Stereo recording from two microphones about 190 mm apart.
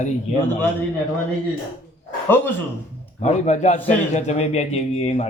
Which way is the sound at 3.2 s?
35° left (ahead or behind).